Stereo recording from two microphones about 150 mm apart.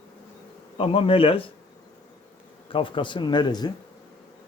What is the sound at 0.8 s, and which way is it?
Speech, 35° left (ahead or behind).